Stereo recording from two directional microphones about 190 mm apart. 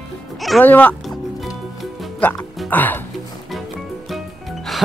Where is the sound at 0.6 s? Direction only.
10° left (ahead or behind).